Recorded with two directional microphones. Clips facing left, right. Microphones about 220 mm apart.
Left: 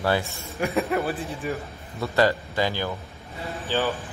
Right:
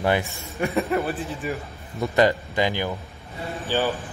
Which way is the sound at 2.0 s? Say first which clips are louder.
Right 2 dB; 15° right (ahead or behind).